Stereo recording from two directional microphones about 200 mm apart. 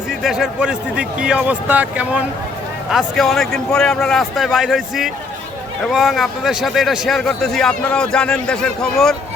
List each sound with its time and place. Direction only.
0.2 s speech: 5° right (ahead or behind)